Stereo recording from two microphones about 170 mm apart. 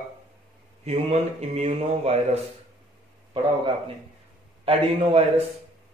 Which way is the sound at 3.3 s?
30° right (ahead or behind).